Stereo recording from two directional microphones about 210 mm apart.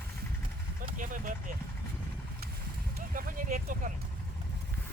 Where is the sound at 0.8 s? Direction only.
40° right (ahead or behind).